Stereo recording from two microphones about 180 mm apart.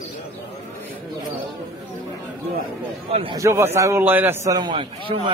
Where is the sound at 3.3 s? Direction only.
15° right (ahead or behind).